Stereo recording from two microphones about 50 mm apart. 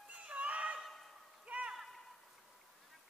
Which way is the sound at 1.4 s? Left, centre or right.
Right.